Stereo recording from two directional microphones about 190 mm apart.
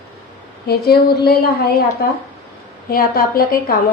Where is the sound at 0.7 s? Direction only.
55° left (ahead or behind).